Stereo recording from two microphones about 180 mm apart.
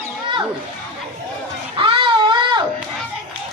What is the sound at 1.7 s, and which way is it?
Baby cry, 25° right (ahead or behind).